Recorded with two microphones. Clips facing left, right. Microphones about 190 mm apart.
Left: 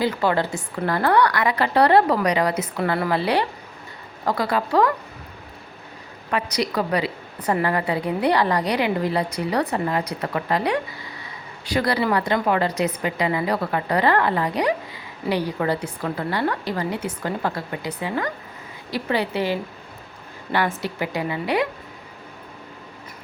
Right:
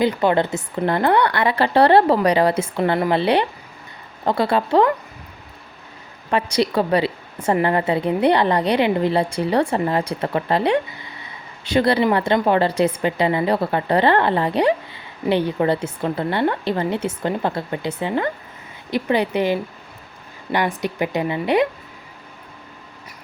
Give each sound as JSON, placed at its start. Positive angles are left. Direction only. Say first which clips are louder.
{"t": 0.0, "sound": "a woman's voice", "louder": "right 4 dB", "side_deg": -20}
{"t": 6.3, "sound": "a woman's voice", "louder": "right 4 dB", "side_deg": -30}